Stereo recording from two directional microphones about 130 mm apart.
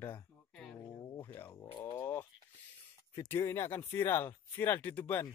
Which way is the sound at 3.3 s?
20° left (ahead or behind).